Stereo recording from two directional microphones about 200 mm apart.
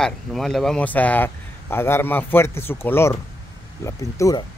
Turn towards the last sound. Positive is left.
turn(degrees=15)  # may be behind; listen again after turning